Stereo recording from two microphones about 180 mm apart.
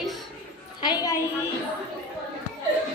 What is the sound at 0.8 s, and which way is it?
Speech, 20° left (ahead or behind).